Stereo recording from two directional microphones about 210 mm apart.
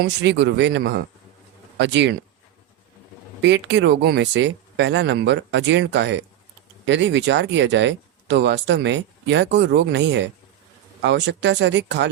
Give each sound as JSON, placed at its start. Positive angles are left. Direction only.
{"t": 0.0, "sound": "speech", "side_deg": -55}
{"t": 3.4, "sound": "speech", "side_deg": -55}